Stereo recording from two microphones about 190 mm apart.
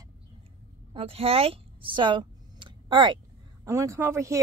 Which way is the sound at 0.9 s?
30° right (ahead or behind).